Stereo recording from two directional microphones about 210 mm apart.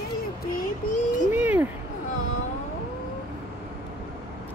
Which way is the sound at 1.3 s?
10° right (ahead or behind).